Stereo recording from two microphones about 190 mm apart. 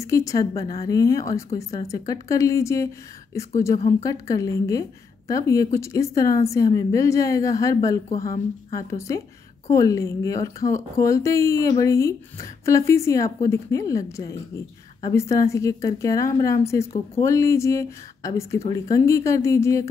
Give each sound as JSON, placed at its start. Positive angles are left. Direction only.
{"t": 0.0, "sound": "a woman's voice", "side_deg": 15}